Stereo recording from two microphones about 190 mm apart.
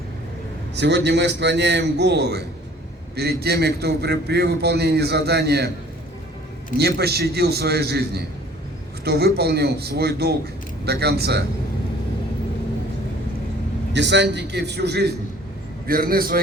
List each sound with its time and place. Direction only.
0.8 s a man's voice: 65° right (ahead or behind)
6.7 s a man's voice: 55° right (ahead or behind)
13.9 s a man's voice: 65° right (ahead or behind)
15.9 s a man's voice: 50° right (ahead or behind)